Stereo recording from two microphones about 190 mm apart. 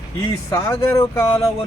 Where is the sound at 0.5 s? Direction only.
15° left (ahead or behind).